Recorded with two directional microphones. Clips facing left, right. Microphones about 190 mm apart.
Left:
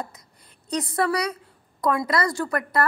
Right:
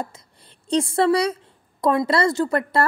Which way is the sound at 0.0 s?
30° right (ahead or behind).